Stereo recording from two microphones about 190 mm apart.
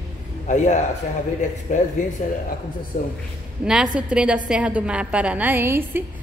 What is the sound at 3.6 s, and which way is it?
A woman's voice, 5° right (ahead or behind).